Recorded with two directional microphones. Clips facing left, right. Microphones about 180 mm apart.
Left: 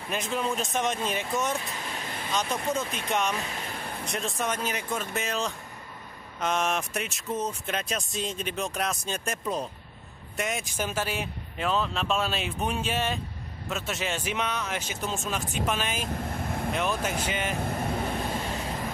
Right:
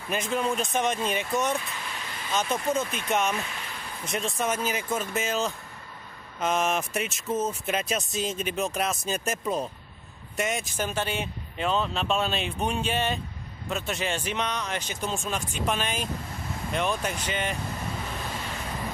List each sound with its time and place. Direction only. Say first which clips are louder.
0.1 s speech: right 2 dB; centre (ahead or behind)
3.5 s a sound: left 3 dB; 35° left (ahead or behind)
4.0 s speech: right 3 dB; centre (ahead or behind)
16.1 s vehicle: left 3 dB; 55° left (ahead or behind)
16.7 s speech: right 2 dB; 5° left (ahead or behind)
17.6 s vehicle: left 5 dB; 55° left (ahead or behind)